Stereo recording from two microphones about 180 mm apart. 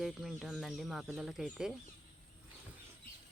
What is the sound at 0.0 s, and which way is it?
Speech, centre (ahead or behind).